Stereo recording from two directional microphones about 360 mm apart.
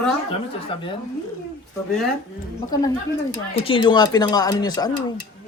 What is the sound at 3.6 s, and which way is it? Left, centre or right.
Speech, centre.